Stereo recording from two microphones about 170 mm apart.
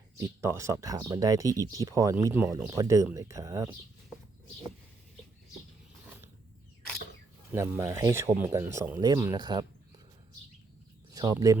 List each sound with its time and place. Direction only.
0.2 s speech: 15° right (ahead or behind)
7.5 s speech: 15° right (ahead or behind)
11.1 s speech: 20° right (ahead or behind)